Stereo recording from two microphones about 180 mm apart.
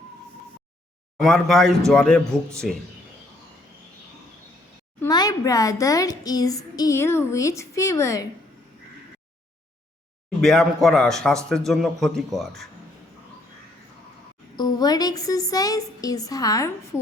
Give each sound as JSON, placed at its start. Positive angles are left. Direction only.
{"t": 1.2, "sound": "speech", "side_deg": 0}
{"t": 4.9, "sound": "a child's voice", "side_deg": 20}
{"t": 10.4, "sound": "speech", "side_deg": 0}
{"t": 14.5, "sound": "a child's voice", "side_deg": 20}